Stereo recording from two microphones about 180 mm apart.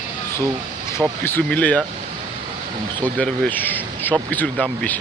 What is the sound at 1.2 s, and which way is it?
Speech, 10° left (ahead or behind).